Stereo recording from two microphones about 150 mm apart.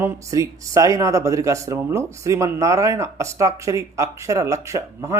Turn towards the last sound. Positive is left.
turn(degrees=-20)  # may be behind; listen again after turning